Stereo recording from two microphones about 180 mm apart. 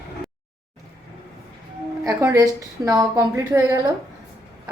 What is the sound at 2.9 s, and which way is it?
Speech, 20° right (ahead or behind).